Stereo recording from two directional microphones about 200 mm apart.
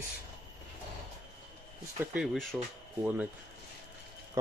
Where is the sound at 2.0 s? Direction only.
10° right (ahead or behind).